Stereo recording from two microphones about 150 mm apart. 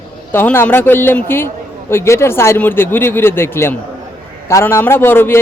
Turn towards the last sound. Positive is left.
turn(degrees=15)  # may be behind; listen again after turning